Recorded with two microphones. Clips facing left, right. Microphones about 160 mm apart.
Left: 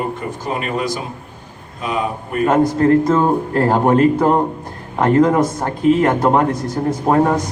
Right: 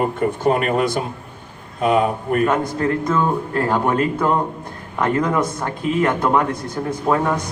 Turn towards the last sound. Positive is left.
turn(degrees=40)  # may be behind; listen again after turning